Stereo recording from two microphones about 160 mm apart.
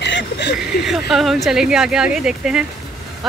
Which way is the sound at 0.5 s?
Centre (ahead or behind).